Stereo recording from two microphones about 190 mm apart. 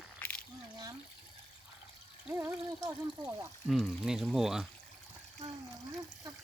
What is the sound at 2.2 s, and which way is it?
Speech, 10° right (ahead or behind).